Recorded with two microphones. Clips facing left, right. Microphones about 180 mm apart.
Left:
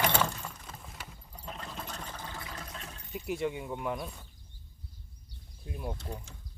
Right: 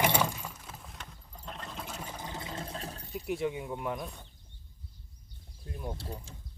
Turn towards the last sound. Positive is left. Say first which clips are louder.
# even
turn(degrees=-30)  # may be behind; listen again after turning